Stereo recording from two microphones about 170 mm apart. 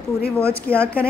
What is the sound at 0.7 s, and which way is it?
Speech, 10° left (ahead or behind).